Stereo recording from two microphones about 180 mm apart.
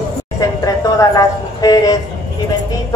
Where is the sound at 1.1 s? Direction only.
20° left (ahead or behind).